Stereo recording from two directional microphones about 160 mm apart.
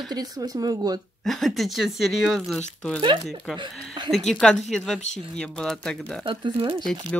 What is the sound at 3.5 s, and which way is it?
Speech, 30° right (ahead or behind).